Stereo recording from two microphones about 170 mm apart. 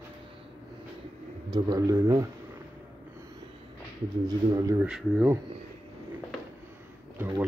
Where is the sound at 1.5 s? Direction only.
20° right (ahead or behind).